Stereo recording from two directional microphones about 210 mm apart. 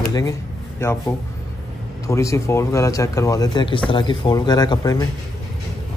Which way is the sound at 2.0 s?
15° left (ahead or behind).